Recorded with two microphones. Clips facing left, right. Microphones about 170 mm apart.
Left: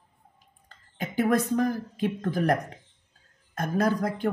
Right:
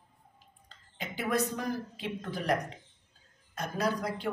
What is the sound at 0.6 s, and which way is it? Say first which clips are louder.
Speech: left 6 dB; 50° left (ahead or behind).